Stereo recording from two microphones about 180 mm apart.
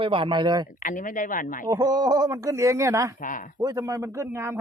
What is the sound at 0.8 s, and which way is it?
Speech, 50° left (ahead or behind).